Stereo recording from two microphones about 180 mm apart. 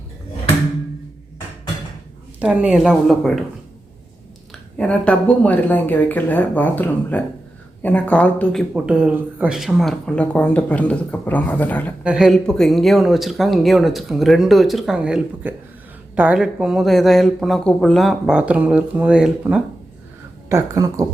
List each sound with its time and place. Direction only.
2.4 s speech: 5° right (ahead or behind)
4.8 s speech: 5° left (ahead or behind)
12.0 s speech: 5° right (ahead or behind)
20.5 s a woman's voice: 20° right (ahead or behind)